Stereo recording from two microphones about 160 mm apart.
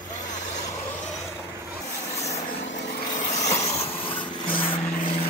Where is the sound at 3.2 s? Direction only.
45° left (ahead or behind).